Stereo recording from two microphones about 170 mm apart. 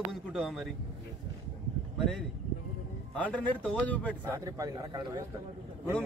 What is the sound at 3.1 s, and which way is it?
A man's voice, 10° left (ahead or behind).